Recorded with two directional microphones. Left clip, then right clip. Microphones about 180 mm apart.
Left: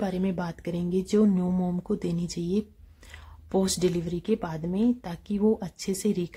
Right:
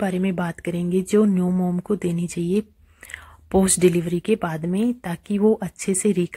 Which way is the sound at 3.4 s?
20° right (ahead or behind).